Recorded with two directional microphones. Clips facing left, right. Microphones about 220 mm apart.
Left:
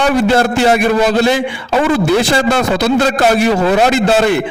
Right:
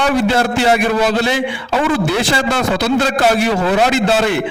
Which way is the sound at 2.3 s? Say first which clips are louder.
Left 3 dB; 45° left (ahead or behind).